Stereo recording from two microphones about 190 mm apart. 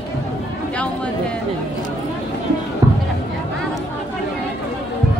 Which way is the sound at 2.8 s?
20° right (ahead or behind).